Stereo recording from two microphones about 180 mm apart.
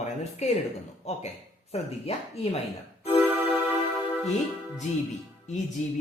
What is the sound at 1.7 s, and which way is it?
Speech, 35° left (ahead or behind).